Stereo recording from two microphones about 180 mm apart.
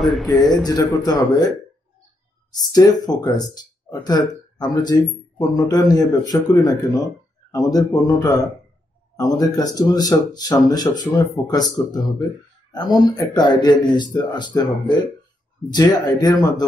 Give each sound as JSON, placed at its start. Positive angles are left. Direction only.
{"t": 0.0, "sound": "a man's voice", "side_deg": 0}
{"t": 0.3, "sound": "a man's voice", "side_deg": 25}
{"t": 2.5, "sound": "a man's voice", "side_deg": 20}
{"t": 12.7, "sound": "a man's voice", "side_deg": 20}